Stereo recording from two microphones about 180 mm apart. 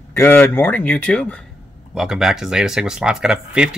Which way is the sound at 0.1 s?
10° left (ahead or behind).